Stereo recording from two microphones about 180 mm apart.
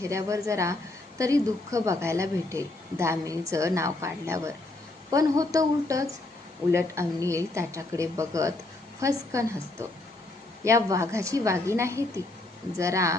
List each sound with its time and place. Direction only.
0.0 s a woman's voice: 15° right (ahead or behind)